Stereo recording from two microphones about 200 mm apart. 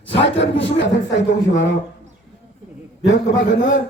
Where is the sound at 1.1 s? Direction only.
65° left (ahead or behind).